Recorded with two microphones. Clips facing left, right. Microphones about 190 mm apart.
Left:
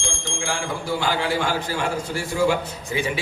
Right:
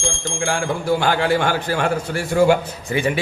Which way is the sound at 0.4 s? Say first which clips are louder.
Right 7 dB; 55° right (ahead or behind).